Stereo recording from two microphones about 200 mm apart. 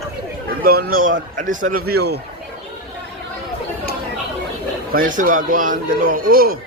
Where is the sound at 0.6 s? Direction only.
50° right (ahead or behind).